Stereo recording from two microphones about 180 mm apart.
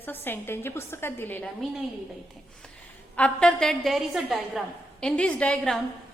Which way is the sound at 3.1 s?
5° left (ahead or behind).